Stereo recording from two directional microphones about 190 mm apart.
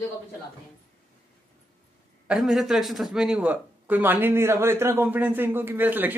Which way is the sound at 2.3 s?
Centre (ahead or behind).